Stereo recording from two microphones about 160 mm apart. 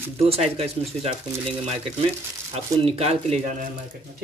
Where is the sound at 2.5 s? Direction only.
40° right (ahead or behind).